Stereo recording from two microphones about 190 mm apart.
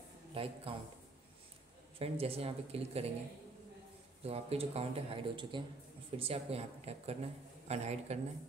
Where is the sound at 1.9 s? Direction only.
30° right (ahead or behind).